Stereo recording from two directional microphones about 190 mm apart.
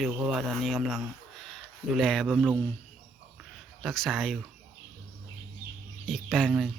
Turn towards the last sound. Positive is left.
turn(degrees=0)  # may be behind; listen again after turning